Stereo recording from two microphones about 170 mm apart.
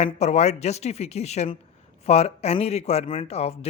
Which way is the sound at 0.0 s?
40° left (ahead or behind).